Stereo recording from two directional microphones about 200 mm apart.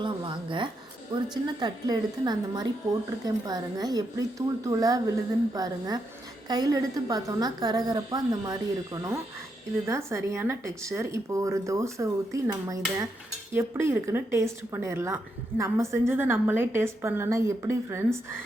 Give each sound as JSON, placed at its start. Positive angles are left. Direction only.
{"t": 0.0, "sound": "a woman's voice", "side_deg": -25}